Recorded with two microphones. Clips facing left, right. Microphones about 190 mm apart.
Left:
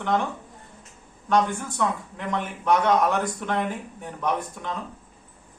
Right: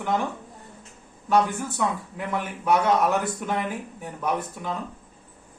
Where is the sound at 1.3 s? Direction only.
5° right (ahead or behind).